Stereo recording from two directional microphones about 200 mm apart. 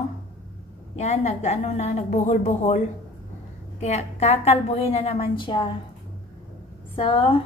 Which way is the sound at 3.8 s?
35° left (ahead or behind).